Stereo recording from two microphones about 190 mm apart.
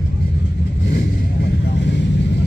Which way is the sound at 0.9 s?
60° left (ahead or behind).